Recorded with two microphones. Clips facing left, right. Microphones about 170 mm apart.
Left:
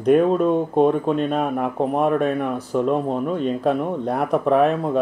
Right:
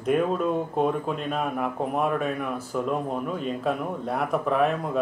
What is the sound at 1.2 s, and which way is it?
Speech, 35° left (ahead or behind).